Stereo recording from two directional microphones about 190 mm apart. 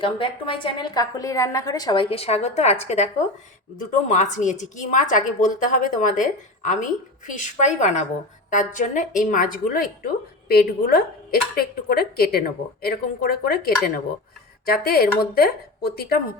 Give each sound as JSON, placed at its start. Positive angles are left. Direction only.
{"t": 0.0, "sound": "a woman's voice", "side_deg": 25}